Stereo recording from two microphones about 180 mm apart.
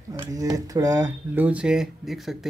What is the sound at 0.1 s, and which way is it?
Speech, 20° right (ahead or behind).